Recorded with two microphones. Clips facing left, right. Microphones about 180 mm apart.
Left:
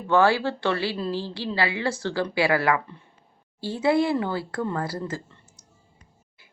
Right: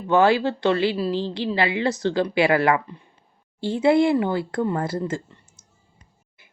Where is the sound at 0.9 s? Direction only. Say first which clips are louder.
Right 4 dB; 10° right (ahead or behind).